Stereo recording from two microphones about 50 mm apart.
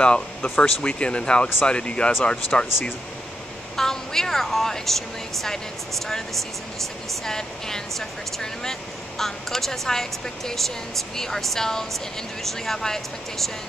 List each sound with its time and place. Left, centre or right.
0.0 s speech: centre
7.2 s speech: centre